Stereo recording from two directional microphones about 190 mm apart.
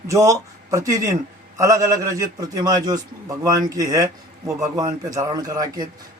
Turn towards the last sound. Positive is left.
turn(degrees=-20)  # may be behind; listen again after turning